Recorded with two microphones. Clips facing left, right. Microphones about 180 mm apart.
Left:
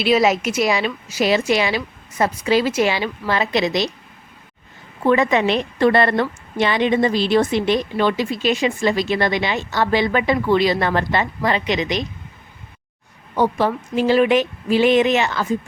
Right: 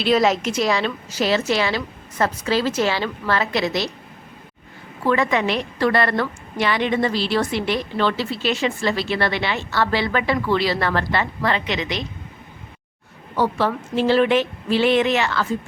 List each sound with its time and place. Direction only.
0.0 s a woman's voice: 10° left (ahead or behind)
5.0 s a woman's voice: 20° left (ahead or behind)
13.3 s a woman's voice: 15° left (ahead or behind)